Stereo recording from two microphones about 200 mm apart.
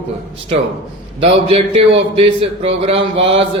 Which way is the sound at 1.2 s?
30° right (ahead or behind).